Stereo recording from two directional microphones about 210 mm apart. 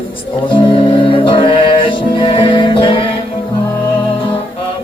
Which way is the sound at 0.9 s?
25° left (ahead or behind).